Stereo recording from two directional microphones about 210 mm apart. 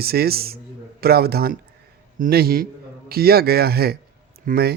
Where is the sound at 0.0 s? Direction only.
45° right (ahead or behind).